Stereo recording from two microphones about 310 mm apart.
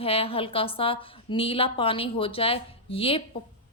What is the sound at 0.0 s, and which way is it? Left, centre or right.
A woman's voice, centre.